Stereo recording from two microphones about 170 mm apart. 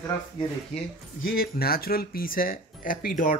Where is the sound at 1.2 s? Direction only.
60° left (ahead or behind).